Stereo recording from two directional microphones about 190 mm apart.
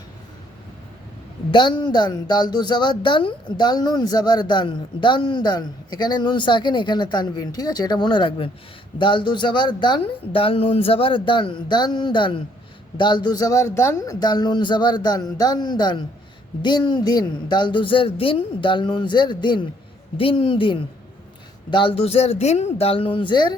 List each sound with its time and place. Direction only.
1.5 s speech: 25° left (ahead or behind)